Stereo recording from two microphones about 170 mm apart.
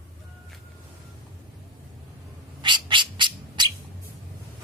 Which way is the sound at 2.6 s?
30° right (ahead or behind).